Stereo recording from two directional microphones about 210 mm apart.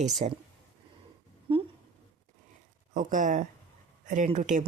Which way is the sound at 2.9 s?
40° right (ahead or behind).